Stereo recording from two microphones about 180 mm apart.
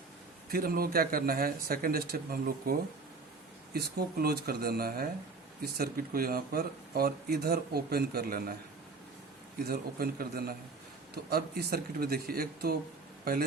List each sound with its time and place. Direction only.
0.5 s speech: 55° right (ahead or behind)
9.6 s speech: 55° right (ahead or behind)